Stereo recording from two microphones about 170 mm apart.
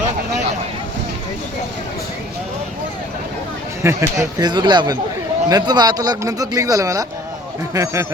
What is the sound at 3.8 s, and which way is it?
Speech, 15° right (ahead or behind).